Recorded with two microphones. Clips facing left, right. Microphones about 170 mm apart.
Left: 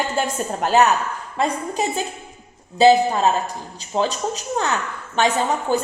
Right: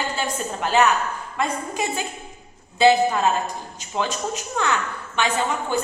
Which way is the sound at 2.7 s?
35° left (ahead or behind).